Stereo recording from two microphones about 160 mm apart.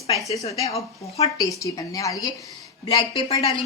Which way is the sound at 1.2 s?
20° left (ahead or behind).